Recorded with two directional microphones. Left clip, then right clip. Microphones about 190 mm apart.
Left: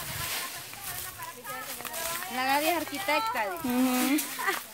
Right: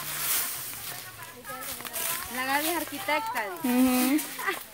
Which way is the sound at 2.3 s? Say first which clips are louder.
Left 2 dB; 40° left (ahead or behind).